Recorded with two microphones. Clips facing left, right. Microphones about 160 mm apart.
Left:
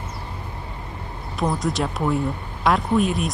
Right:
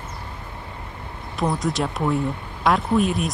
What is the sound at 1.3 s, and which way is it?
Speech, centre (ahead or behind).